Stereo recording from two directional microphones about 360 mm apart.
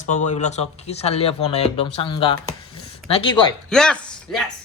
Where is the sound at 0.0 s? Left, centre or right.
Centre.